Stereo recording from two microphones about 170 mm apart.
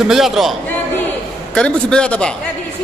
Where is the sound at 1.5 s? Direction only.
5° left (ahead or behind).